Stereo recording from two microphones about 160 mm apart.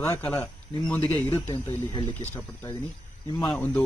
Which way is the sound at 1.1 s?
25° left (ahead or behind).